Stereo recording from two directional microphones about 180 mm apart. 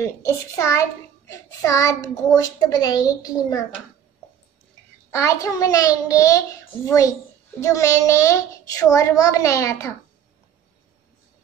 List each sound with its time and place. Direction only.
0.0 s a child's voice: 15° left (ahead or behind)
5.1 s a woman's voice: 15° left (ahead or behind)